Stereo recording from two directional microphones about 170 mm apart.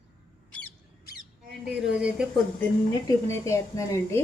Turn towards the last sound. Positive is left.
turn(degrees=15)  # may be behind; listen again after turning